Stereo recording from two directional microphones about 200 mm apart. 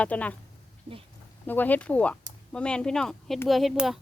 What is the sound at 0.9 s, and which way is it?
Speech, 25° right (ahead or behind).